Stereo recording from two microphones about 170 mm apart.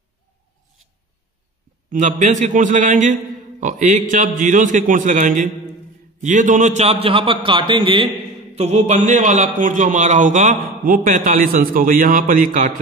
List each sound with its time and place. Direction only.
1.9 s a man's voice: 45° right (ahead or behind); by 8.1 s 30° right (ahead or behind)
8.5 s a man's voice: 40° right (ahead or behind)